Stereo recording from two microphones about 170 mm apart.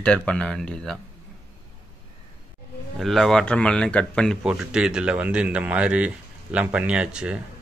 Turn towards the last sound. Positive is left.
turn(degrees=-5)  # may be behind; listen again after turning